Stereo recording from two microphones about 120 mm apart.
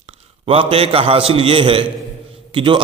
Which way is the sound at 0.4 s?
50° right (ahead or behind).